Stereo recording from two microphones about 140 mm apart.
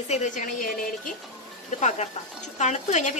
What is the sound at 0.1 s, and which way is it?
Speech, 60° left (ahead or behind).